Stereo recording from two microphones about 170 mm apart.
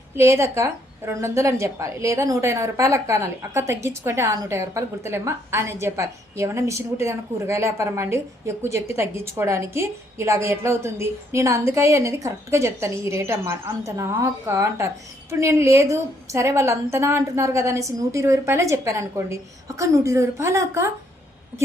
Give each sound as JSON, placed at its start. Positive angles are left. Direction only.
{"t": 0.2, "sound": "a woman's voice", "side_deg": -15}